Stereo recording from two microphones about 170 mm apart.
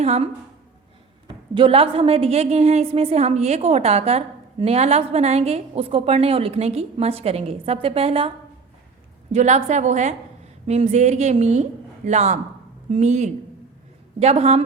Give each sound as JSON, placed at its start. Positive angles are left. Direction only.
{"t": 0.0, "sound": "a woman's voice", "side_deg": -40}
{"t": 1.3, "sound": "a woman's voice", "side_deg": -35}
{"t": 9.3, "sound": "a woman's voice", "side_deg": -45}